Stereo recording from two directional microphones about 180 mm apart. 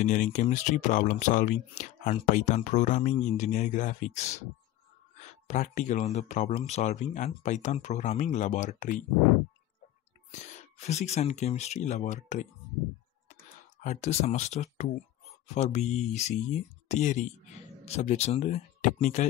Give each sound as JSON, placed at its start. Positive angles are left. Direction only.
{"t": 0.0, "sound": "speech", "side_deg": 45}
{"t": 10.3, "sound": "speech", "side_deg": 40}
{"t": 13.8, "sound": "speech", "side_deg": 40}